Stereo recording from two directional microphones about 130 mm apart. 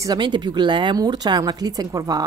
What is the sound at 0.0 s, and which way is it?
Speech, 35° right (ahead or behind).